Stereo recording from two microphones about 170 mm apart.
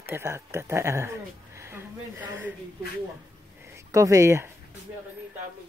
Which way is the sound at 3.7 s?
20° right (ahead or behind).